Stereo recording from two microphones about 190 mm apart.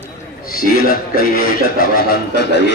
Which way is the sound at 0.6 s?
50° left (ahead or behind).